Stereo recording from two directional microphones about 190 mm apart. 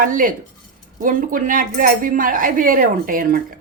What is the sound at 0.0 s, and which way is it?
Speech, 45° right (ahead or behind).